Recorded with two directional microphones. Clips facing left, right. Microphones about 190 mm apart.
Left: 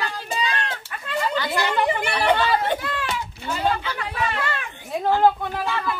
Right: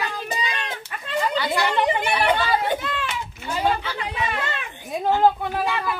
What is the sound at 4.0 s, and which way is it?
Speech, 20° right (ahead or behind).